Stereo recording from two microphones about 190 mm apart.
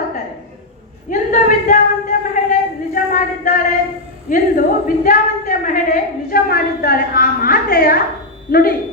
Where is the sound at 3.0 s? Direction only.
45° left (ahead or behind).